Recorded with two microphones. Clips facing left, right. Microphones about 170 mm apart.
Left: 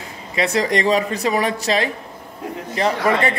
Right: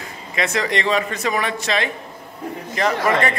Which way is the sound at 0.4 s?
35° left (ahead or behind).